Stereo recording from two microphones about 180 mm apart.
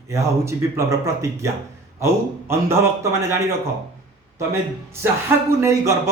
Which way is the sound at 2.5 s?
15° right (ahead or behind).